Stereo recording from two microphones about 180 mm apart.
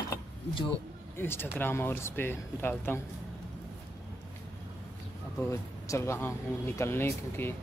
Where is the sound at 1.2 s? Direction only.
10° left (ahead or behind).